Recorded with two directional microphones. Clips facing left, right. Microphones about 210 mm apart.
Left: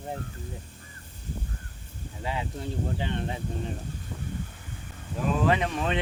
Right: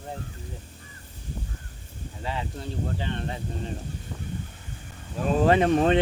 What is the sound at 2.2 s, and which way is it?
Speech, 15° left (ahead or behind).